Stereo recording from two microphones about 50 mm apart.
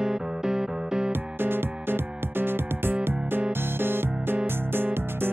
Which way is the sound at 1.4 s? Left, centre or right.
Right.